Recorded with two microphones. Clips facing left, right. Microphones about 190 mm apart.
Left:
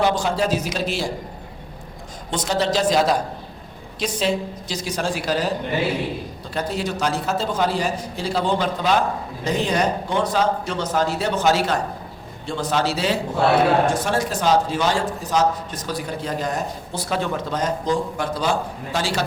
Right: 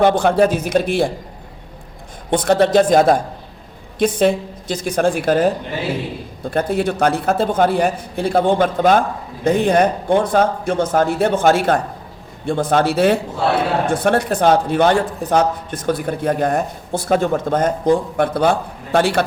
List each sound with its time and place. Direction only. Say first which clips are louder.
0.0 s a man's voice: right 7 dB; 55° right (ahead or behind)
2.3 s a man's voice: right 8 dB; 55° right (ahead or behind)